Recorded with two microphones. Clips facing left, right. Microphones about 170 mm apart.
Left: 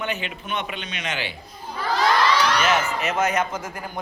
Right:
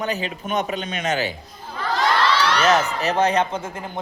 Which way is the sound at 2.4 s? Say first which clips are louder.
Right 1 dB; 10° left (ahead or behind).